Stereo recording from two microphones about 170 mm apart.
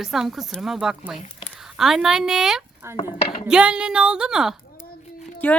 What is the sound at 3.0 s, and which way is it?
Speech, 30° left (ahead or behind).